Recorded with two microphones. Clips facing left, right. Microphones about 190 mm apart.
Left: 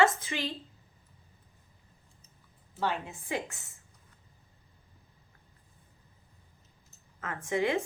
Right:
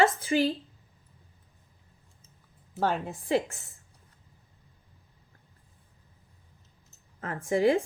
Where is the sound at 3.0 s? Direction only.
35° right (ahead or behind).